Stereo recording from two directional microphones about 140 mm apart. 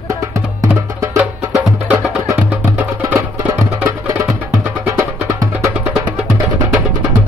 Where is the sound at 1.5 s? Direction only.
5° right (ahead or behind).